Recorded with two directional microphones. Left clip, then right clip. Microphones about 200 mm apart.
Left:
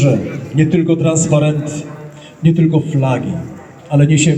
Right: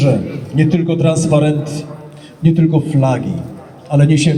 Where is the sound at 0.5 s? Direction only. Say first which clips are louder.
Left 2 dB; 40° right (ahead or behind).